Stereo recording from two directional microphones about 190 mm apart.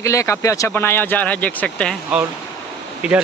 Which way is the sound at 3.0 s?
5° right (ahead or behind).